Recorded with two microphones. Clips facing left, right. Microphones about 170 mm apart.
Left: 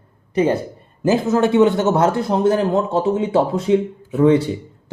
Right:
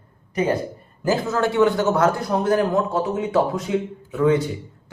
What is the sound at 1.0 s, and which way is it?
Speech, 20° left (ahead or behind).